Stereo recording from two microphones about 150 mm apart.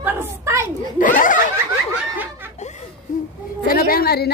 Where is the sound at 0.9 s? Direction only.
65° left (ahead or behind).